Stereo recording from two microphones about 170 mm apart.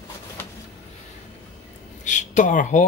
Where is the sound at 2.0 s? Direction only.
45° left (ahead or behind).